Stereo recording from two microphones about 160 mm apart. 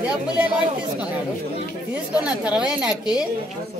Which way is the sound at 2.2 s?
5° right (ahead or behind).